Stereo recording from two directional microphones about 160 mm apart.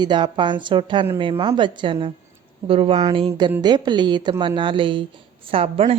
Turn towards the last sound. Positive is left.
turn(degrees=-35)  # may be behind; listen again after turning